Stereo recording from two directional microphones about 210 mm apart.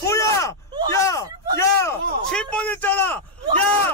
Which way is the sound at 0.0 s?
15° left (ahead or behind).